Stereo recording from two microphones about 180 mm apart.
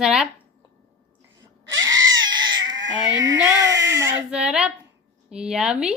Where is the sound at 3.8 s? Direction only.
15° right (ahead or behind).